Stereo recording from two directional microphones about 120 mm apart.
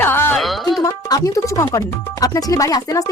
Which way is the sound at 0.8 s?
30° left (ahead or behind).